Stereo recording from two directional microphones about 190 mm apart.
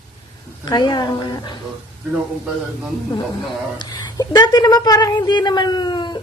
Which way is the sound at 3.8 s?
20° left (ahead or behind).